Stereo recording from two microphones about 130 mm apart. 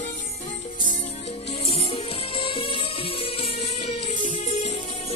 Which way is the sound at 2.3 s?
40° left (ahead or behind).